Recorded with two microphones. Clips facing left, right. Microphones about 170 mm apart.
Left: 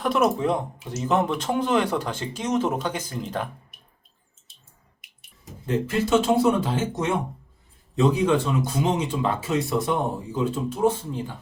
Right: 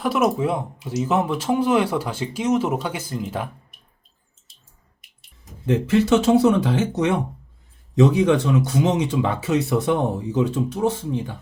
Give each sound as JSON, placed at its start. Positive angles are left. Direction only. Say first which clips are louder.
{"t": 0.0, "sound": "speech", "louder": "right 1 dB", "side_deg": -5}
{"t": 5.6, "sound": "a man's voice", "louder": "right 6 dB", "side_deg": -75}